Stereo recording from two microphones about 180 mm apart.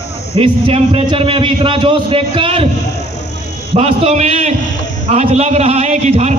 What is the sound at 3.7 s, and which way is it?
A man's voice, 35° right (ahead or behind).